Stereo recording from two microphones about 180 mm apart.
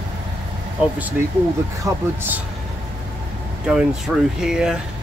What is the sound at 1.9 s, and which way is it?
Speech, 15° right (ahead or behind).